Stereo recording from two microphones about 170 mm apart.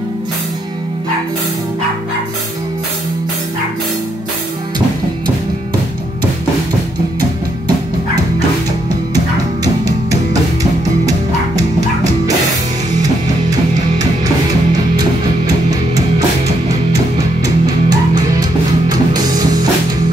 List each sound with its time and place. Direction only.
10.6 s music: 20° right (ahead or behind)
17.4 s music: 20° right (ahead or behind)